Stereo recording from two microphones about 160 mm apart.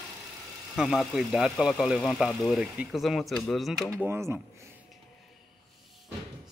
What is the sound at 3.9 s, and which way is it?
Speech, 15° right (ahead or behind).